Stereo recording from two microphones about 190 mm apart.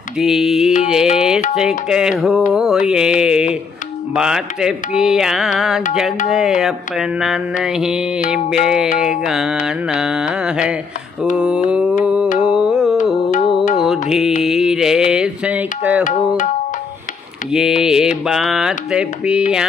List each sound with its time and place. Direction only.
0.2 s music: centre (ahead or behind)
12.0 s mantra: 5° right (ahead or behind)
12.4 s music: 5° right (ahead or behind)
14.4 s music: centre (ahead or behind)
16.0 s tabla: 40° left (ahead or behind)
17.5 s music: centre (ahead or behind)